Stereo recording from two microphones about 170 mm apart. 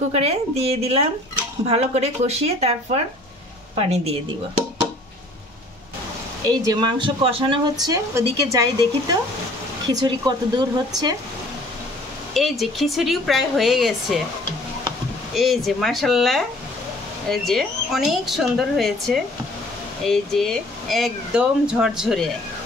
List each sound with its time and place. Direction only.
0.1 s speech: 35° right (ahead or behind)
6.5 s speech: 25° right (ahead or behind)
12.4 s speech: centre (ahead or behind)
15.3 s speech: centre (ahead or behind)